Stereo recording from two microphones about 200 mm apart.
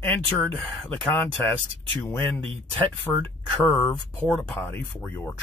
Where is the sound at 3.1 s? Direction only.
5° left (ahead or behind).